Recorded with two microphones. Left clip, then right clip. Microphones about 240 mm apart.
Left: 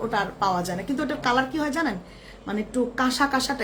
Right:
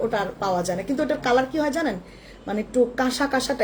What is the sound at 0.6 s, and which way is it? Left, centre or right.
Speech, centre.